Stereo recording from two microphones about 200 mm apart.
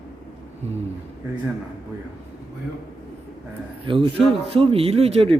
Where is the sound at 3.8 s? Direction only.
25° right (ahead or behind).